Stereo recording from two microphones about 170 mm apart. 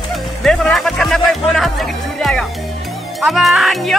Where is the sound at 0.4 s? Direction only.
5° left (ahead or behind).